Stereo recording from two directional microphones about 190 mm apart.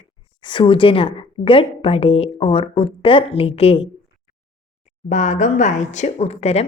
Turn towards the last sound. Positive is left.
turn(degrees=35)  # may be behind; listen again after turning